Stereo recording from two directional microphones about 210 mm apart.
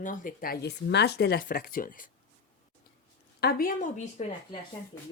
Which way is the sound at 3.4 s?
40° left (ahead or behind).